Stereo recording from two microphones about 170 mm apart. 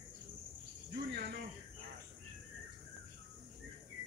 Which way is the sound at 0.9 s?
70° right (ahead or behind).